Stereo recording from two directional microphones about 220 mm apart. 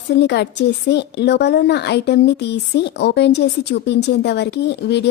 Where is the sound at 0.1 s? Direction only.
50° left (ahead or behind).